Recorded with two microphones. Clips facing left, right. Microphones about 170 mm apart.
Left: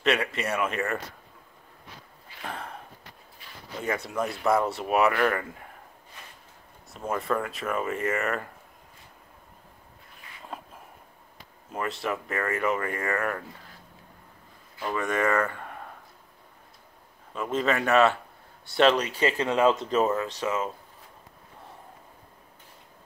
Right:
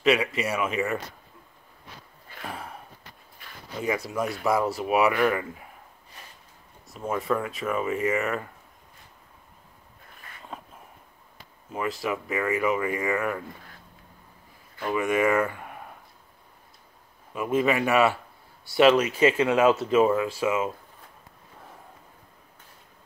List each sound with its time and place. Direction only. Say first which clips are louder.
0.0 s speech: right 3 dB; 5° right (ahead or behind)
2.4 s sniff: even; 5° right (ahead or behind)
3.4 s a sound: right 3 dB; 50° right (ahead or behind)
3.8 s speech: right 2 dB; 5° right (ahead or behind)
6.9 s speech: right 1 dB; centre (ahead or behind)
11.7 s speech: right 2 dB; centre (ahead or behind)
14.9 s speech: right 3 dB; 10° right (ahead or behind)
17.3 s speech: right 3 dB; 10° right (ahead or behind)